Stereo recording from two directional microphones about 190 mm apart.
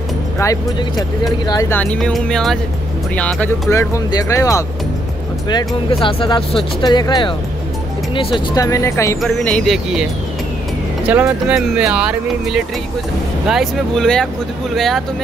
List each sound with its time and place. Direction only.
0.4 s speech: 20° left (ahead or behind)
5.9 s speech: 30° left (ahead or behind)
8.6 s speech: 15° left (ahead or behind)
11.1 s speech: 5° right (ahead or behind)